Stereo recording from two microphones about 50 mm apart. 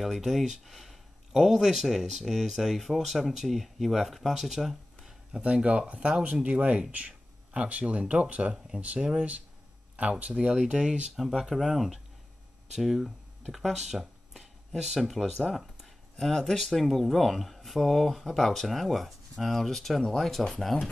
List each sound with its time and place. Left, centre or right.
0.0 s speech: centre
5.3 s speech: right
6.9 s a sound: right
7.9 s speech: right
10.5 s speech: centre